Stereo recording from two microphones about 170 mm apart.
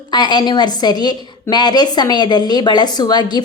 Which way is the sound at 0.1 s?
25° left (ahead or behind).